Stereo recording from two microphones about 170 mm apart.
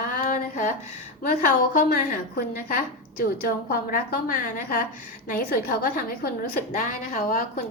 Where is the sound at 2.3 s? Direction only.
60° left (ahead or behind).